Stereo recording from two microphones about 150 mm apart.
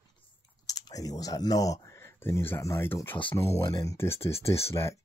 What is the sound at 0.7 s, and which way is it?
Speech, 25° left (ahead or behind).